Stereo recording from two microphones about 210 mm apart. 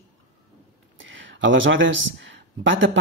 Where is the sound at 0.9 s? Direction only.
60° right (ahead or behind).